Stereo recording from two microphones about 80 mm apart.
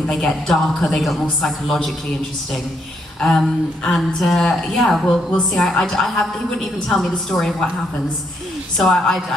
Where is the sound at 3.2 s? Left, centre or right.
Centre.